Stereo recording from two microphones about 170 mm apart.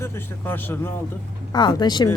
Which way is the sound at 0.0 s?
15° left (ahead or behind).